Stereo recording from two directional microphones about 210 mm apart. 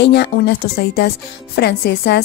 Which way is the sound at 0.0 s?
55° left (ahead or behind).